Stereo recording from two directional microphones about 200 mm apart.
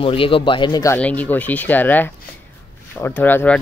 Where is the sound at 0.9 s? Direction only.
10° left (ahead or behind).